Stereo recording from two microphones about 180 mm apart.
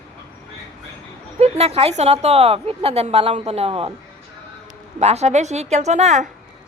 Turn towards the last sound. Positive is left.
turn(degrees=-40)  # may be behind; listen again after turning